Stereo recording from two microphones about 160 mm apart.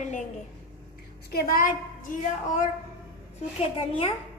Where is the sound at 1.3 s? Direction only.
65° left (ahead or behind).